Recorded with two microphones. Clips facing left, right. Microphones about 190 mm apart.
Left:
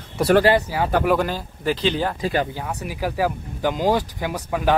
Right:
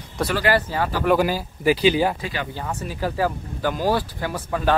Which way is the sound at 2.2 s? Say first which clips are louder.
Left 7 dB; 45° left (ahead or behind).